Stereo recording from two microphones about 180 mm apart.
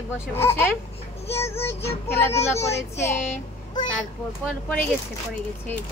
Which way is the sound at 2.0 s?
15° left (ahead or behind).